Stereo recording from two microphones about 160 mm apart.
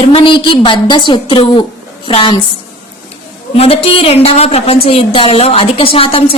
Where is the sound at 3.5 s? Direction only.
40° left (ahead or behind).